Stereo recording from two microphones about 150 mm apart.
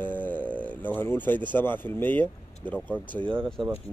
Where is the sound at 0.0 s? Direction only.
10° left (ahead or behind).